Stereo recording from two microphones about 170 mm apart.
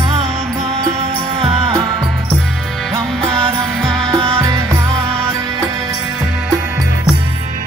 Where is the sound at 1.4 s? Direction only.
35° right (ahead or behind).